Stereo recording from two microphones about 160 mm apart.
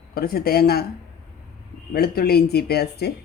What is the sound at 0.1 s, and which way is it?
Speech, 70° left (ahead or behind).